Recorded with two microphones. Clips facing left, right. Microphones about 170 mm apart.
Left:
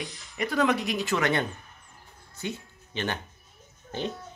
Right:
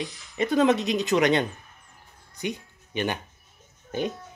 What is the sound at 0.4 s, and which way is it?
A woman's voice, 20° right (ahead or behind).